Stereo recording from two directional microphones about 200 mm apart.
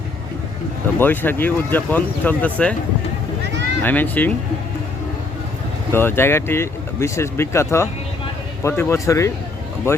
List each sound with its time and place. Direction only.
0.9 s speech: 10° left (ahead or behind)
3.8 s speech: 10° left (ahead or behind)
5.9 s speech: 10° left (ahead or behind)